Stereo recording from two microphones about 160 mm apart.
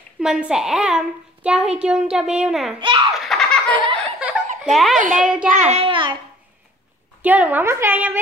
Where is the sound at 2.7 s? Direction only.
30° right (ahead or behind).